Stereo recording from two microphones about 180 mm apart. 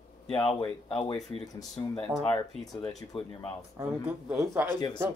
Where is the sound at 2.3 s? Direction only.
20° left (ahead or behind).